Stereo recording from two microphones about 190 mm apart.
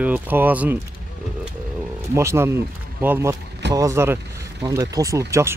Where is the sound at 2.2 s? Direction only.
15° right (ahead or behind).